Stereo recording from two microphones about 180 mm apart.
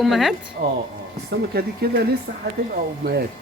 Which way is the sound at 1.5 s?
60° right (ahead or behind).